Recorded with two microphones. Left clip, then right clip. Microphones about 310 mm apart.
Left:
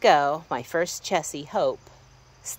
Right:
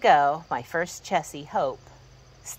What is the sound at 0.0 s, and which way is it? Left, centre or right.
Speech, centre.